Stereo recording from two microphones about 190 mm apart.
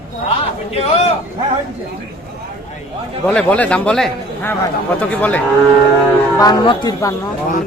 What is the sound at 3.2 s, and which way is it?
A man's voice, 5° left (ahead or behind).